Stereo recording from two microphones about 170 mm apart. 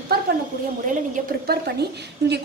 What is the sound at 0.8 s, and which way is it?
A woman's voice, 60° right (ahead or behind).